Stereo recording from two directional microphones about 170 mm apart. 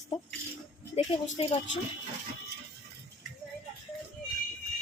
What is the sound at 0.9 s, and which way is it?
Speech, 40° left (ahead or behind).